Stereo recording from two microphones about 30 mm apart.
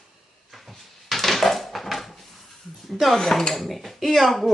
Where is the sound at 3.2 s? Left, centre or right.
Centre.